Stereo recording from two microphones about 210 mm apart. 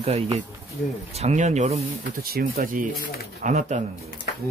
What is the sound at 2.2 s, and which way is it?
Speech, 45° right (ahead or behind).